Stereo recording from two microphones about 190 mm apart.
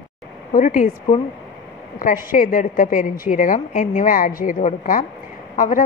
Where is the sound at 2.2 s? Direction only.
45° left (ahead or behind).